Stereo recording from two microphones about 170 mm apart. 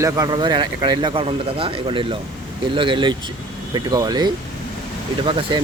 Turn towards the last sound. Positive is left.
turn(degrees=-30)  # may be behind; listen again after turning